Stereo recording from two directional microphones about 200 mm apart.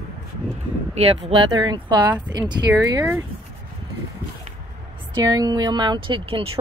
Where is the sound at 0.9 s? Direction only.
30° right (ahead or behind).